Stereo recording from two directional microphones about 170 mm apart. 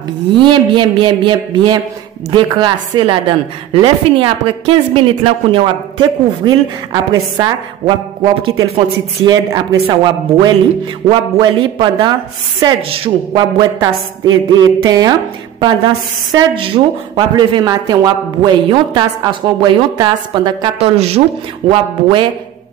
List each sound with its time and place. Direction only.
0.4 s a woman's voice: 30° right (ahead or behind)
20.9 s a woman's voice: 35° right (ahead or behind)